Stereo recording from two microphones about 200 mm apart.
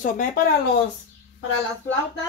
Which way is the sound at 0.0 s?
40° left (ahead or behind).